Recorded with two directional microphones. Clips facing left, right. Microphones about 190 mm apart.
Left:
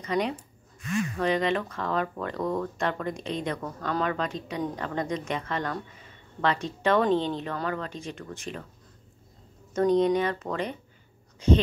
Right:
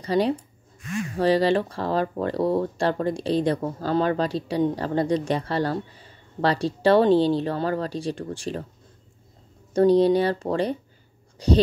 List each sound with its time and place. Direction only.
0.0 s speech: 30° right (ahead or behind)
9.8 s speech: 35° right (ahead or behind)